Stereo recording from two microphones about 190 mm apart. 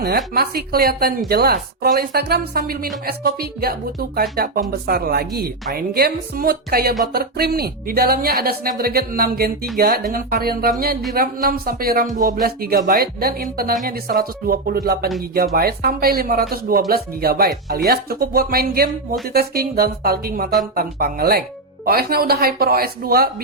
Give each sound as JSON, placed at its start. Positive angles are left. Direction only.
{"t": 0.3, "sound": "a woman's voice", "side_deg": -55}